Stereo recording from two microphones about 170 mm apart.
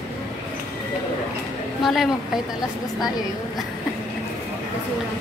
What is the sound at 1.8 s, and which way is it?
Speech, centre (ahead or behind).